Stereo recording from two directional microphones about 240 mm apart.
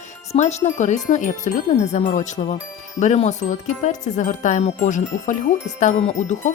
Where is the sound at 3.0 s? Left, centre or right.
Left.